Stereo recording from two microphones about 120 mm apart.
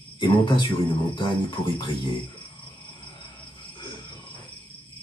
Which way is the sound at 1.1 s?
45° left (ahead or behind).